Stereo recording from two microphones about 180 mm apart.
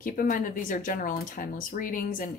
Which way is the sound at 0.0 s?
50° left (ahead or behind).